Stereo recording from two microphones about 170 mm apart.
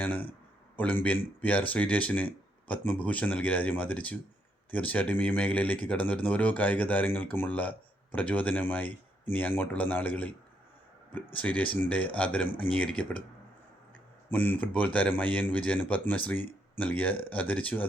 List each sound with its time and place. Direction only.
0.0 s a man's voice: 10° left (ahead or behind)
11.3 s speech: 10° left (ahead or behind)
14.3 s speech: 10° left (ahead or behind)